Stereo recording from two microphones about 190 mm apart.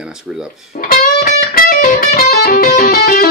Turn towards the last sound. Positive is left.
turn(degrees=50)  # may be behind; listen again after turning